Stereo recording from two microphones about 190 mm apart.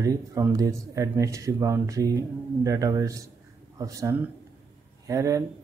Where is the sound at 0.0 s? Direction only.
15° right (ahead or behind).